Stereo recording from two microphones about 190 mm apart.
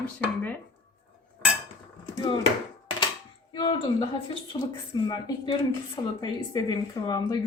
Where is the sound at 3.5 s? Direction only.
25° left (ahead or behind).